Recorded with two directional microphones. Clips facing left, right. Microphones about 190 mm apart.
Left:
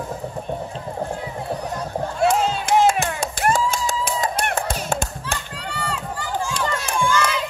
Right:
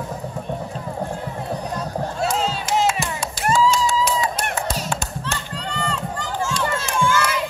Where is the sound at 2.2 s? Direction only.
50° left (ahead or behind).